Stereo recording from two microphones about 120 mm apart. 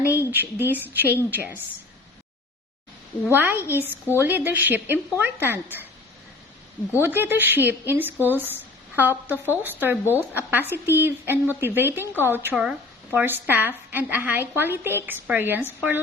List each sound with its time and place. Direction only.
0.3 s speech: 15° right (ahead or behind)
3.3 s speech: 15° right (ahead or behind)
7.0 s speech: 15° right (ahead or behind)